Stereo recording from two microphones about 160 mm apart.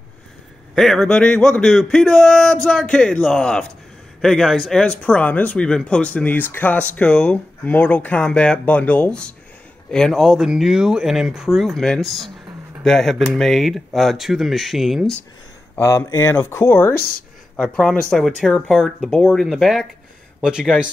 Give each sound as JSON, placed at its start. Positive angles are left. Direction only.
{"t": 0.7, "sound": "speech", "side_deg": 0}
{"t": 15.7, "sound": "speech", "side_deg": 15}
{"t": 17.6, "sound": "speech", "side_deg": 5}